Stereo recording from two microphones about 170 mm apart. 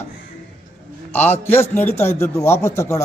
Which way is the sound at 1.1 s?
10° left (ahead or behind).